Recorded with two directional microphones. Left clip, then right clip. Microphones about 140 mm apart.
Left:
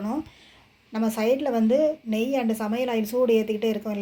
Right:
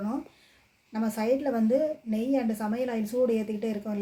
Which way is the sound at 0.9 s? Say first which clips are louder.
Left 4 dB; 15° left (ahead or behind).